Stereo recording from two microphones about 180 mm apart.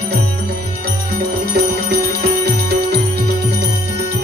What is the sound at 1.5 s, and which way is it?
Music, 65° right (ahead or behind).